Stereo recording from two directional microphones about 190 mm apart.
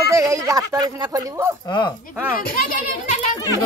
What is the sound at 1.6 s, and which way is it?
Speech, 25° left (ahead or behind).